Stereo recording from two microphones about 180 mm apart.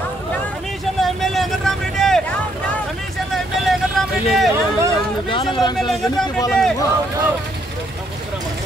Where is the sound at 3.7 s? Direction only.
Centre (ahead or behind).